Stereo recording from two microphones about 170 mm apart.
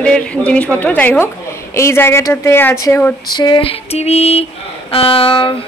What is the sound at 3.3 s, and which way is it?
A woman's voice, 30° left (ahead or behind).